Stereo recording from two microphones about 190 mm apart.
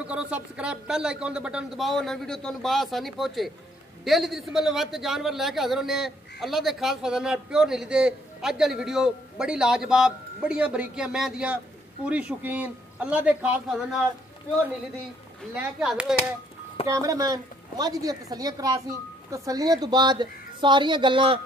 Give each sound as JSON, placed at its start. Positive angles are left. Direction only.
{"t": 0.0, "sound": "a man's voice", "side_deg": -5}
{"t": 15.5, "sound": "a man's voice", "side_deg": -5}
{"t": 16.8, "sound": "a woman's voice", "side_deg": -15}